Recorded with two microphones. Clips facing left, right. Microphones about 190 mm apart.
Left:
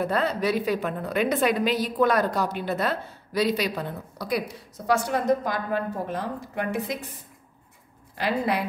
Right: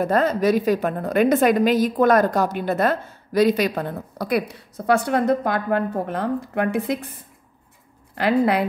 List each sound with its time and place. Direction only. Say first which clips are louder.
0.0 s a woman's voice: right 6 dB; 45° right (ahead or behind)
8.1 s a woman's voice: right 7 dB; 60° right (ahead or behind)